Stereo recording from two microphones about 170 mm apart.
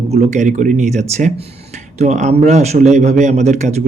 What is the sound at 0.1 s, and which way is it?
Speech, 40° right (ahead or behind).